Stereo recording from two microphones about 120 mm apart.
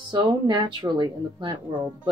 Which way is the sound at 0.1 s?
40° right (ahead or behind).